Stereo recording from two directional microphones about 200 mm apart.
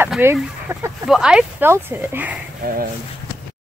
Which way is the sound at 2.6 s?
45° right (ahead or behind).